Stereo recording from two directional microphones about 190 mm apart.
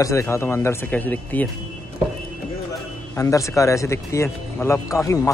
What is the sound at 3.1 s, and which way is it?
A man's voice, 15° left (ahead or behind).